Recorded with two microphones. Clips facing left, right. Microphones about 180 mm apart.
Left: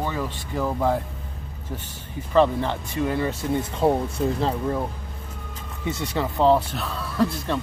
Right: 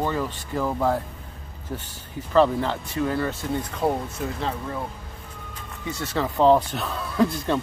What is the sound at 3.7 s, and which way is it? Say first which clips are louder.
Speech: left 5 dB; 30° left (ahead or behind).